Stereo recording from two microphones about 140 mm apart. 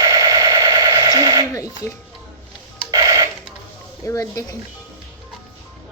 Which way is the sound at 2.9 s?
25° right (ahead or behind).